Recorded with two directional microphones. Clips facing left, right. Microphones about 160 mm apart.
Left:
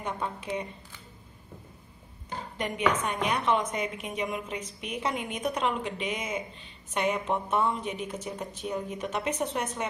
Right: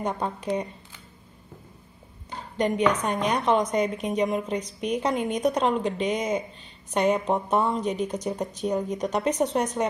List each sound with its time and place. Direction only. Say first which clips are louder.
0.0 s a woman's voice: right 5 dB; 40° right (ahead or behind)
2.5 s a woman's voice: right 5 dB; 35° right (ahead or behind)